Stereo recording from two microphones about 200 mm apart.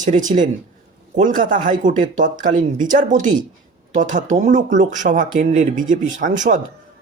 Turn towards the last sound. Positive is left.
turn(degrees=-40)  # may be behind; listen again after turning